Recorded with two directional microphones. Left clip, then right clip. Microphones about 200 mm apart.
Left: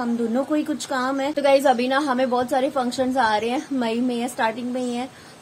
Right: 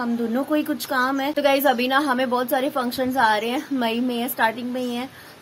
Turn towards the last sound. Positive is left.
turn(degrees=0)  # may be behind; listen again after turning